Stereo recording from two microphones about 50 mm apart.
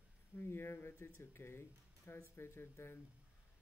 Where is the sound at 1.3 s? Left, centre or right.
Left.